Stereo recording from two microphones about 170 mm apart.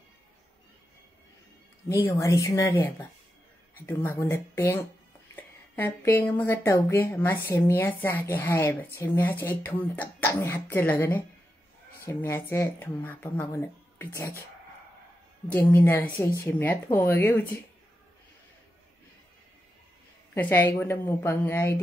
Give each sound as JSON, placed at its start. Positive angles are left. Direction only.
{"t": 2.0, "sound": "speech", "side_deg": 20}
{"t": 15.5, "sound": "speech", "side_deg": 15}
{"t": 20.3, "sound": "speech", "side_deg": 10}